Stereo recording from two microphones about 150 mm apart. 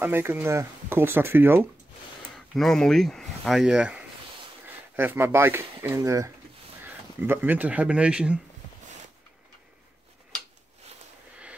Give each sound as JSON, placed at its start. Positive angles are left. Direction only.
{"t": 0.0, "sound": "speech", "side_deg": -15}
{"t": 2.3, "sound": "speech", "side_deg": 0}